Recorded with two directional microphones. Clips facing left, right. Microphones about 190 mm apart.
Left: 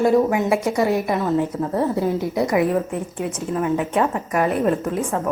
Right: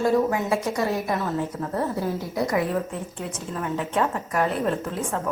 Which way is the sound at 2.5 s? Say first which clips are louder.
Left 5 dB; 15° left (ahead or behind).